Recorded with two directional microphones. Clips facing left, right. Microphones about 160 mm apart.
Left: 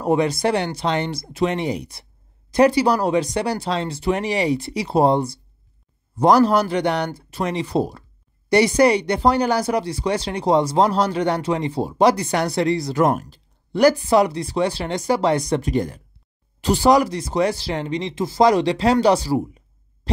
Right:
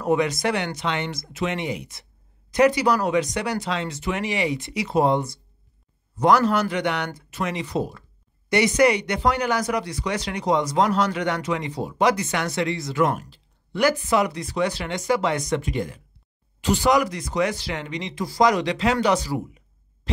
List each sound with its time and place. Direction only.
0.0 s speech: 30° left (ahead or behind)